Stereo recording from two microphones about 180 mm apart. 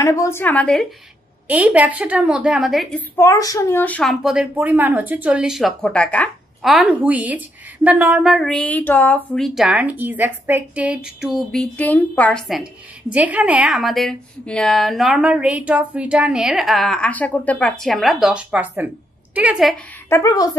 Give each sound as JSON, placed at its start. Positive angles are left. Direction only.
{"t": 0.0, "sound": "a woman's voice", "side_deg": 15}
{"t": 1.5, "sound": "a woman's voice", "side_deg": -10}
{"t": 3.2, "sound": "speech", "side_deg": 15}
{"t": 20.1, "sound": "a woman's voice", "side_deg": 15}